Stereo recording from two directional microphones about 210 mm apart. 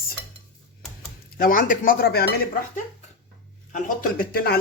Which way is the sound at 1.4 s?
40° left (ahead or behind).